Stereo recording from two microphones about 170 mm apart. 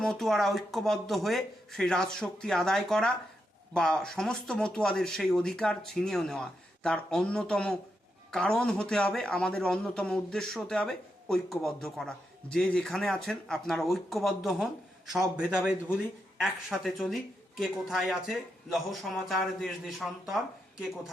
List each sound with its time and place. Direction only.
0.0 s a man's voice: centre (ahead or behind)